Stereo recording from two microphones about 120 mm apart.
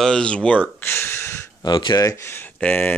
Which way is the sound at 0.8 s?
20° left (ahead or behind).